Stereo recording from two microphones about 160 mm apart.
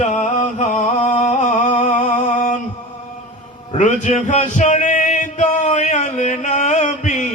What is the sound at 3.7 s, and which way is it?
Male singing, 45° left (ahead or behind).